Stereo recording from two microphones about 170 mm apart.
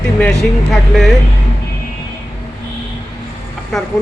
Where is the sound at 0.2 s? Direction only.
5° left (ahead or behind).